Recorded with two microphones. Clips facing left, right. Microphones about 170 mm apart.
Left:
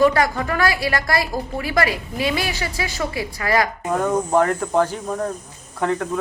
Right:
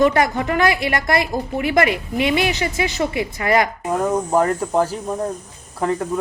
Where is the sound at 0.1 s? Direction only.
20° right (ahead or behind).